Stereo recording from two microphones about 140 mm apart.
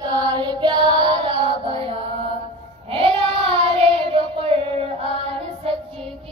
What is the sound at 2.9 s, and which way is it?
Child singing, 45° right (ahead or behind).